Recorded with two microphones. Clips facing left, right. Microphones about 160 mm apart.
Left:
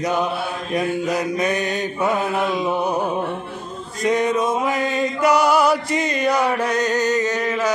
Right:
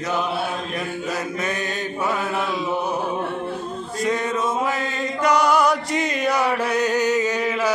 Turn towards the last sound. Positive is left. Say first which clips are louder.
# left 1 dB
turn(degrees=-10)  # may be behind; listen again after turning